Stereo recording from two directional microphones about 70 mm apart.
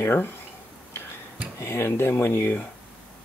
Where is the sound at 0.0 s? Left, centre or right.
Left.